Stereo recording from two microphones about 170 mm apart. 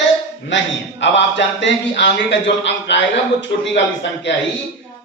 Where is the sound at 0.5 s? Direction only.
90° left.